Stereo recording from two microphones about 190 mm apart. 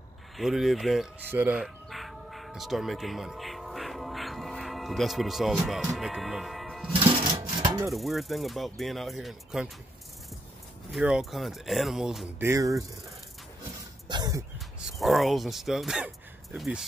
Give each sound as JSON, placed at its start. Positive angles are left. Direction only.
{"t": 0.4, "sound": "speech", "side_deg": 0}
{"t": 1.3, "sound": "chicken", "side_deg": -10}
{"t": 5.7, "sound": "speech", "side_deg": 0}
{"t": 6.9, "sound": "sewing machine", "side_deg": -25}
{"t": 7.3, "sound": "filing", "side_deg": -15}
{"t": 7.9, "sound": "speech", "side_deg": 0}
{"t": 10.9, "sound": "speech", "side_deg": 0}
{"t": 12.4, "sound": "speech", "side_deg": -15}
{"t": 14.0, "sound": "a sound", "side_deg": -20}
{"t": 14.9, "sound": "speech", "side_deg": 0}